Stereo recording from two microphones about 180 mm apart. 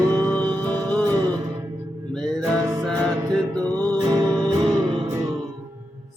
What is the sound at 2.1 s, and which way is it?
Music, centre (ahead or behind).